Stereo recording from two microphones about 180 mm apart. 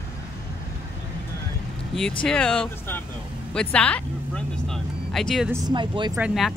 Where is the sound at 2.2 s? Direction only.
5° left (ahead or behind).